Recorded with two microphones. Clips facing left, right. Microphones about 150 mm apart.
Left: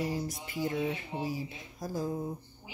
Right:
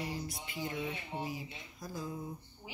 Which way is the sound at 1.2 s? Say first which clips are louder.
Left 6 dB; 40° left (ahead or behind).